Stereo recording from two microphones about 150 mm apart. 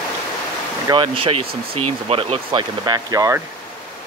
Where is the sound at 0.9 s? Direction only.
35° right (ahead or behind).